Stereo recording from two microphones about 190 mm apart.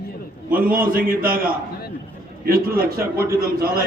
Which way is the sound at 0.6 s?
50° right (ahead or behind).